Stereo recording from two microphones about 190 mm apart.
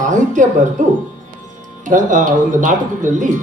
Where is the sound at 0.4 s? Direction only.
40° right (ahead or behind).